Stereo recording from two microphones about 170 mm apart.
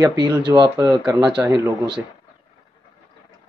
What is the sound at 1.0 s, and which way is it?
Speech, 5° right (ahead or behind).